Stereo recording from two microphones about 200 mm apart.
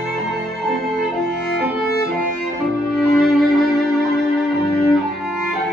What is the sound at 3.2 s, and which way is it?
Music, centre (ahead or behind).